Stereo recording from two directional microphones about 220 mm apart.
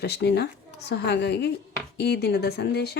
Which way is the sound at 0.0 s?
50° left (ahead or behind).